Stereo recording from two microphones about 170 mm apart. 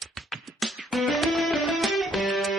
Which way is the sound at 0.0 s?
Centre (ahead or behind).